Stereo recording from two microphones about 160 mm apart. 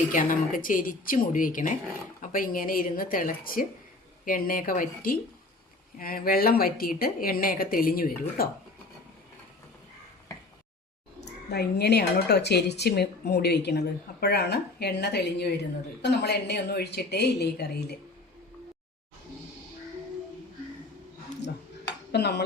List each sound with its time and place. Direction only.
0.1 s speech: 55° left (ahead or behind)
11.5 s a woman's voice: 90° left
22.1 s a woman's voice: 90° left